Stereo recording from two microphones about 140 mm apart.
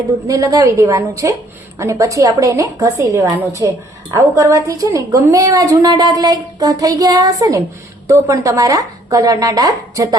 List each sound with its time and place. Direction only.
0.3 s a woman's voice: 25° right (ahead or behind)